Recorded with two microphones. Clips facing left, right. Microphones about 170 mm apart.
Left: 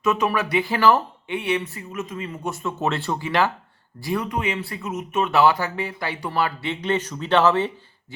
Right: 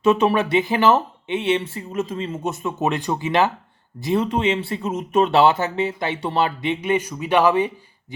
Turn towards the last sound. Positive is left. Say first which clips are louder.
# right 1 dB
turn(degrees=-15)  # may be behind; listen again after turning